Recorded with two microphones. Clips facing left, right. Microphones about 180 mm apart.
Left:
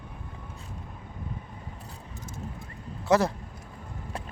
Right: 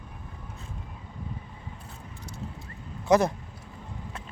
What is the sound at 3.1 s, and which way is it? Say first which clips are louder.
Speech: right 1 dB; 15° right (ahead or behind).